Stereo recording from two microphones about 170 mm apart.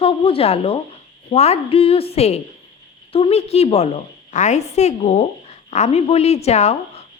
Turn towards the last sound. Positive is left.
turn(degrees=40)  # may be behind; listen again after turning